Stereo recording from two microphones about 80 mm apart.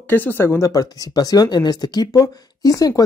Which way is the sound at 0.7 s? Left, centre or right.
Left.